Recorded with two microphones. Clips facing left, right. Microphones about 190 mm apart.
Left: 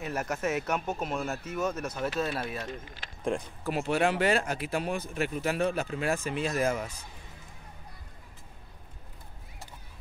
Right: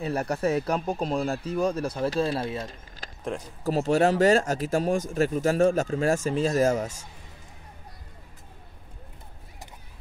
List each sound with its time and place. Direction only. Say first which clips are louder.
0.0 s speech: right 5 dB; 30° right (ahead or behind)